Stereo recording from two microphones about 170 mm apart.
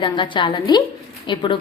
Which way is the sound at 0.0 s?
30° left (ahead or behind).